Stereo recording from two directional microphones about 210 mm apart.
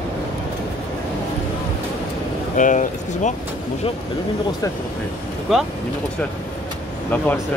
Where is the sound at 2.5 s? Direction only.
40° left (ahead or behind).